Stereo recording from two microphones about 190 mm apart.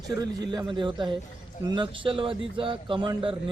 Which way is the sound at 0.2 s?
20° right (ahead or behind).